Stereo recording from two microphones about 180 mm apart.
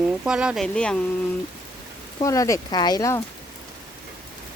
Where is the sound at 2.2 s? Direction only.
20° left (ahead or behind).